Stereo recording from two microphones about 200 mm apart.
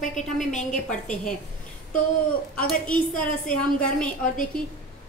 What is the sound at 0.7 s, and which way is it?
Speech, 5° left (ahead or behind).